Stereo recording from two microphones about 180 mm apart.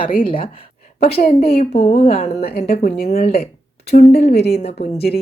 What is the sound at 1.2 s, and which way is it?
Speech, 60° left (ahead or behind).